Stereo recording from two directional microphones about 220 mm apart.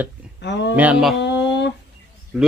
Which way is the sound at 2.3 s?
Centre (ahead or behind).